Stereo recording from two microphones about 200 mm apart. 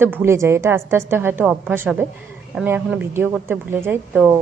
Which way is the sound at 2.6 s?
5° right (ahead or behind).